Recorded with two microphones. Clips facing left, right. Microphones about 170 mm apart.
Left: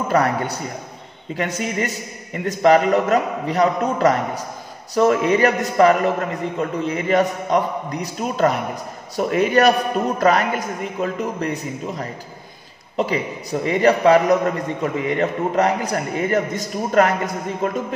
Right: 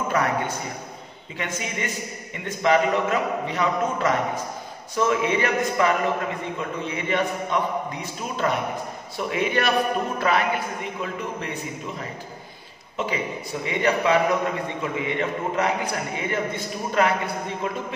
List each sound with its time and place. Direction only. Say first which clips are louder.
0.1 s a man's voice: left 6 dB; 35° left (ahead or behind)